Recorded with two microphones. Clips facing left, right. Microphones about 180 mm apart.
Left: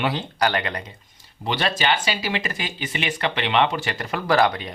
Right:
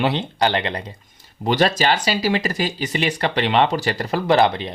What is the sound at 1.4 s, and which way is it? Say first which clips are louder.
Speech: right 5 dB; 40° right (ahead or behind).